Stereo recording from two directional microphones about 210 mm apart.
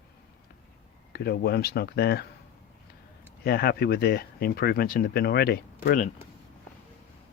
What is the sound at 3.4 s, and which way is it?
Speech, 50° left (ahead or behind).